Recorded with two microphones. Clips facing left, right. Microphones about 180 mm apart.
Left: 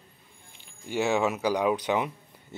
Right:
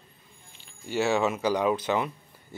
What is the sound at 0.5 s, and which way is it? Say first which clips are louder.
Music: right 1 dB; 15° left (ahead or behind).